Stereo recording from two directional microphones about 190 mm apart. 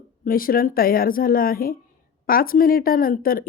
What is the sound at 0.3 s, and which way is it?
Speech, 50° left (ahead or behind).